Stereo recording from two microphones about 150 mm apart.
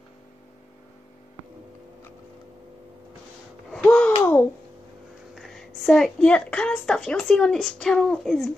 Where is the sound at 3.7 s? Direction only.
5° left (ahead or behind).